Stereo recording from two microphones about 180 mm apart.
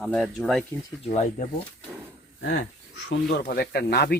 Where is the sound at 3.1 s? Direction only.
60° left (ahead or behind).